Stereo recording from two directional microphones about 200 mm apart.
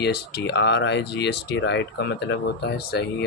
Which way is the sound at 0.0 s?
55° left (ahead or behind).